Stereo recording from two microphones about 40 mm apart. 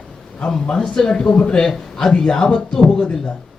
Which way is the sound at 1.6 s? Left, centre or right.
Centre.